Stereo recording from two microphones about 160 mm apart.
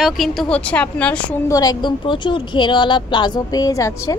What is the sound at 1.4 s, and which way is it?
A woman's voice, 20° left (ahead or behind).